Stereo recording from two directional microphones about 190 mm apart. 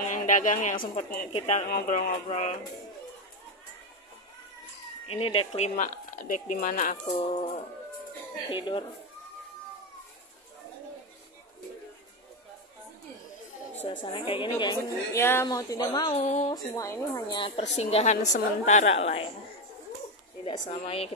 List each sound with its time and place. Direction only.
0.1 s a woman's voice: 45° left (ahead or behind)
1.3 s speech: 35° left (ahead or behind)
1.7 s speech: 45° left (ahead or behind)
5.1 s speech: 30° left (ahead or behind)
7.1 s a woman's voice: 30° left (ahead or behind)
14.0 s a woman's voice: 30° left (ahead or behind)
16.2 s speech: 35° left (ahead or behind)
16.7 s a woman's voice: 15° left (ahead or behind)
17.7 s speech: 35° left (ahead or behind)
20.6 s speech: 35° left (ahead or behind)